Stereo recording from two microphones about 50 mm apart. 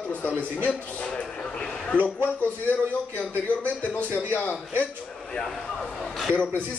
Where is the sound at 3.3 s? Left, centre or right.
Left.